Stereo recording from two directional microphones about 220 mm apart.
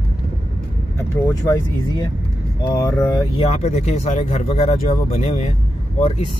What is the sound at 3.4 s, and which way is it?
Speech, 30° left (ahead or behind).